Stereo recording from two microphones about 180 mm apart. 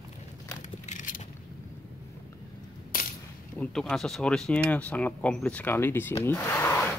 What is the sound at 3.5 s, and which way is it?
Speech, 5° left (ahead or behind).